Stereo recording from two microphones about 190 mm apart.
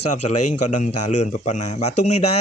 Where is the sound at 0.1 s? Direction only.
40° left (ahead or behind).